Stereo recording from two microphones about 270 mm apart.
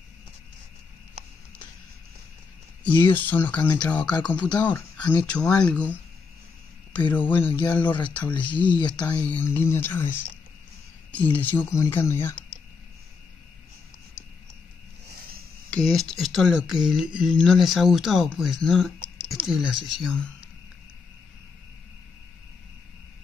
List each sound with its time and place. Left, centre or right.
3.1 s speech: centre
5.7 s speech: centre
7.2 s speech: centre
8.7 s speech: centre
9.0 s speech: centre
15.7 s speech: centre